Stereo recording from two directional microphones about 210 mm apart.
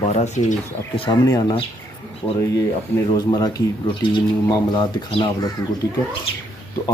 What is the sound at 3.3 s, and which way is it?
Speech, 20° left (ahead or behind).